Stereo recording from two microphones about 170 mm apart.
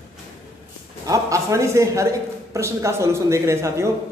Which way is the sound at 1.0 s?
20° right (ahead or behind).